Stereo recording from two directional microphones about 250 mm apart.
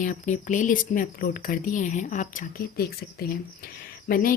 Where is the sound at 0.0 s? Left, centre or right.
Left.